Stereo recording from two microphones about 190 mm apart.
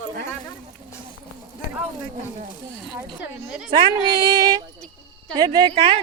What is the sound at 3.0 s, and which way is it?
Speech, 10° right (ahead or behind).